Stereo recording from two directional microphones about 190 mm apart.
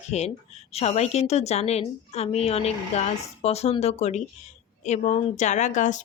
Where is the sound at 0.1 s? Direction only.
35° left (ahead or behind).